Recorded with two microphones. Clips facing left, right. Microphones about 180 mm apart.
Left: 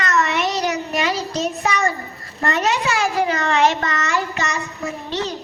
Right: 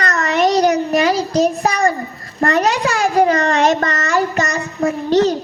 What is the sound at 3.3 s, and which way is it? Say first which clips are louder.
Child singing: right 4 dB; 40° right (ahead or behind).